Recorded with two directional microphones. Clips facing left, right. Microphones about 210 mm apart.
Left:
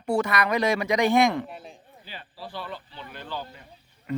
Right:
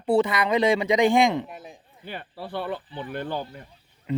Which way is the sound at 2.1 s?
60° right (ahead or behind).